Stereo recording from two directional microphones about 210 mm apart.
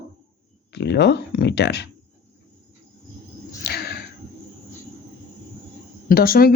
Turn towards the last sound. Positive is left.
turn(degrees=45)  # may be behind; listen again after turning